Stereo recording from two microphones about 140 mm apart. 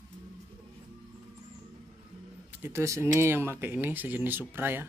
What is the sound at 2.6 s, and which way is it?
Speech, 20° right (ahead or behind).